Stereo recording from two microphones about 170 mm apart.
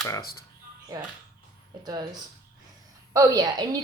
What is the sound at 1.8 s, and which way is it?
Speech, 25° right (ahead or behind).